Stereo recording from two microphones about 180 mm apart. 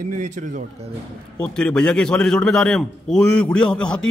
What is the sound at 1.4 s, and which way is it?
A man's voice, 5° left (ahead or behind).